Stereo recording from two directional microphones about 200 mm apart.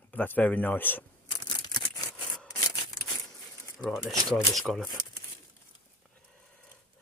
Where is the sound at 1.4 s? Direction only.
20° left (ahead or behind).